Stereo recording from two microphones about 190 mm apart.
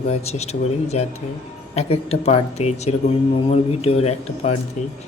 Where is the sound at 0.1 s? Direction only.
35° left (ahead or behind).